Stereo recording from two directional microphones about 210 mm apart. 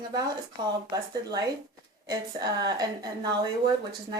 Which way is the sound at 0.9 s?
20° right (ahead or behind).